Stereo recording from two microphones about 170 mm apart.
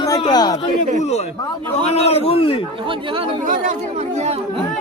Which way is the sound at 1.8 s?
35° left (ahead or behind).